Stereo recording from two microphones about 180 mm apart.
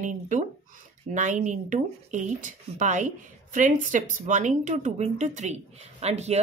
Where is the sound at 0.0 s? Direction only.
45° right (ahead or behind).